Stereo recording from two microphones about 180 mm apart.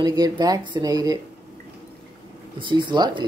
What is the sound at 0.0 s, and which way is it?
Speech, 25° right (ahead or behind).